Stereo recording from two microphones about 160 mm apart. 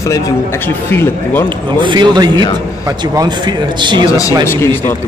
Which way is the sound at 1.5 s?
30° right (ahead or behind).